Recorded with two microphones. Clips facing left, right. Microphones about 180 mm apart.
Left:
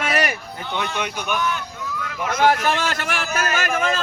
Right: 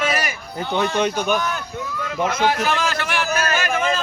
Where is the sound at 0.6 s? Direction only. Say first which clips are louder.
Right 8 dB; 35° right (ahead or behind).